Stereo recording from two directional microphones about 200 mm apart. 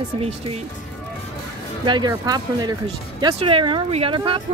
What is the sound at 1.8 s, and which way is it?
Speech, 20° right (ahead or behind).